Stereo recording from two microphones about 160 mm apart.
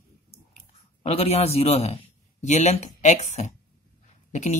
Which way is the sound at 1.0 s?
40° left (ahead or behind).